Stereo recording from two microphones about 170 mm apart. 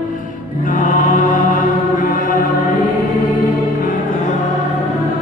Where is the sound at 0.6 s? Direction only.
55° left (ahead or behind).